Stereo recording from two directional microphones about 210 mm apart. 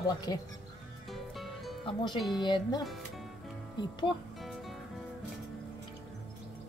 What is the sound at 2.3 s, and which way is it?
Speech, 20° left (ahead or behind).